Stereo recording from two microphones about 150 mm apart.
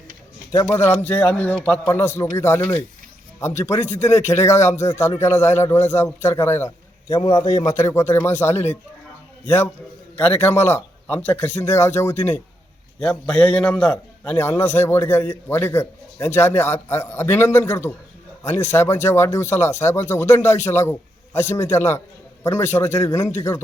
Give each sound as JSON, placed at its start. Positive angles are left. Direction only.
{"t": 0.5, "sound": "a man's voice", "side_deg": 15}
{"t": 7.1, "sound": "a man's voice", "side_deg": 25}
{"t": 10.2, "sound": "a man's voice", "side_deg": 10}